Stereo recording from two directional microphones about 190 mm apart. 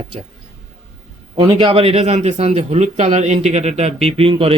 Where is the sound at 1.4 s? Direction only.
30° right (ahead or behind).